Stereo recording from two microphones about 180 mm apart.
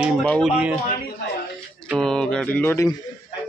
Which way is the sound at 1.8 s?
5° left (ahead or behind).